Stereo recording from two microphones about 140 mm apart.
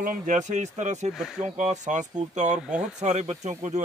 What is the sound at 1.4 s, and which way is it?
Speech, 55° right (ahead or behind).